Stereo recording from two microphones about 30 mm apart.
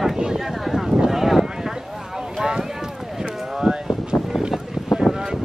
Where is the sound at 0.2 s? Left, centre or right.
Right.